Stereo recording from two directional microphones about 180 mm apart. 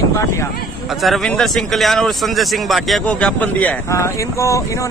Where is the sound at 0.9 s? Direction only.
Centre (ahead or behind); by 4.8 s 15° left (ahead or behind).